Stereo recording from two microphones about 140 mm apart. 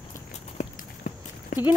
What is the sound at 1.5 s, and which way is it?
Clip-clop, 65° left (ahead or behind).